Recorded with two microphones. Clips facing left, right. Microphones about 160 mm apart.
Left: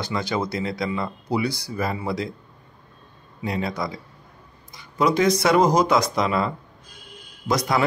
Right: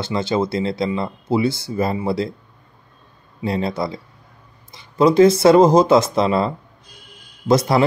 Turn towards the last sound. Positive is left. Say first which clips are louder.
# right 6 dB
turn(degrees=-30)  # may be behind; listen again after turning